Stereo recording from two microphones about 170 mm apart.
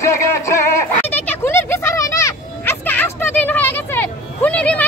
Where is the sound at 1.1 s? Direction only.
10° left (ahead or behind).